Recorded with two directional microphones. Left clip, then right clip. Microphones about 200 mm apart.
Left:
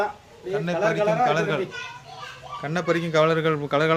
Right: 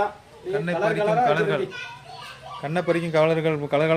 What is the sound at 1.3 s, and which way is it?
Speech, 5° right (ahead or behind).